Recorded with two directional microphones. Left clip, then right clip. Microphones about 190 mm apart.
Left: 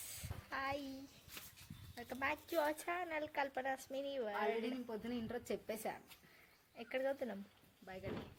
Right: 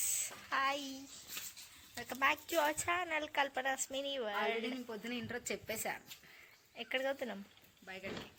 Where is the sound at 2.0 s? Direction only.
10° right (ahead or behind).